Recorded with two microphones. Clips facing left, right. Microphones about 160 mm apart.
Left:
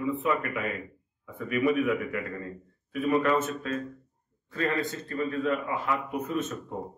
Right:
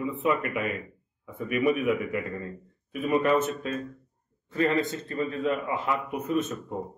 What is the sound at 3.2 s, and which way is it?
A man's voice, 20° right (ahead or behind).